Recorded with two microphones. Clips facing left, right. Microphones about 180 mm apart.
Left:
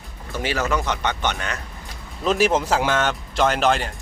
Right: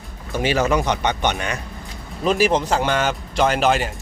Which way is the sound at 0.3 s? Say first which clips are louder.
Right 4 dB; 15° right (ahead or behind).